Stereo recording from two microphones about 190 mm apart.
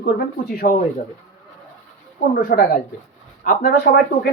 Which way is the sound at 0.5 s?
50° left (ahead or behind).